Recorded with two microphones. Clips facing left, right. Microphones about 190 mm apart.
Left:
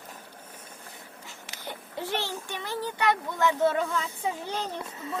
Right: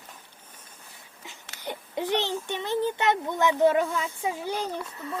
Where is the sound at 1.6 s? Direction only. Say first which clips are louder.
Right 5 dB; 20° right (ahead or behind).